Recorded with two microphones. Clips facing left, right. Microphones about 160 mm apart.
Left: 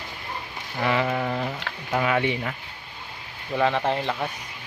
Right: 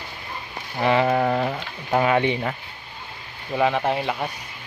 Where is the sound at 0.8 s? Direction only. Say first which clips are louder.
Right 4 dB; 30° right (ahead or behind).